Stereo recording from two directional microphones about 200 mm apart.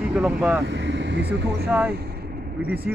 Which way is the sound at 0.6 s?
60° right (ahead or behind).